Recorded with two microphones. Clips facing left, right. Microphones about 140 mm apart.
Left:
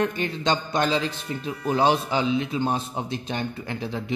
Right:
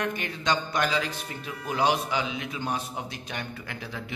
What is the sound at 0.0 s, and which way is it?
A man's voice, 30° left (ahead or behind).